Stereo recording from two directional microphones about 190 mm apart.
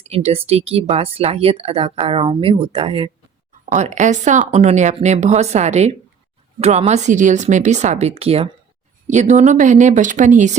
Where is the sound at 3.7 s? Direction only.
40° right (ahead or behind).